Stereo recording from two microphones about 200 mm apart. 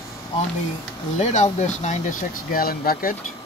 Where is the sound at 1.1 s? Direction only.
35° left (ahead or behind).